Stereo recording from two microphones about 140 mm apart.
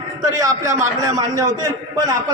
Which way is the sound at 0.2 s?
25° right (ahead or behind).